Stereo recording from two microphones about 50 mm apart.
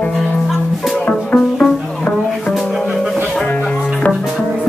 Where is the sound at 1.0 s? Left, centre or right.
Left.